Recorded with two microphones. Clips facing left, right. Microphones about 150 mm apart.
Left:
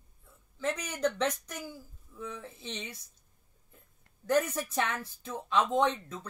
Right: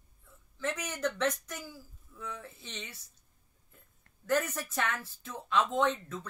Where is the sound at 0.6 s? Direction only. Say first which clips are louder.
Left 3 dB; 15° left (ahead or behind).